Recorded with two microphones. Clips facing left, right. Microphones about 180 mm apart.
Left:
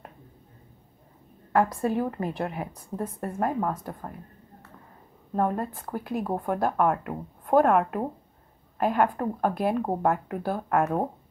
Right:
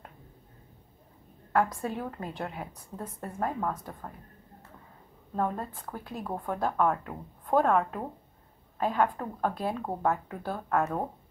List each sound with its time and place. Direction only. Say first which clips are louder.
1.5 s a woman's voice: left 4 dB; 10° left (ahead or behind)
5.3 s a woman's voice: left 5 dB; 10° left (ahead or behind)